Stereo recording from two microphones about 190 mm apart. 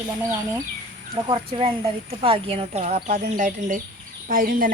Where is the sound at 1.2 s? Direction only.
30° right (ahead or behind).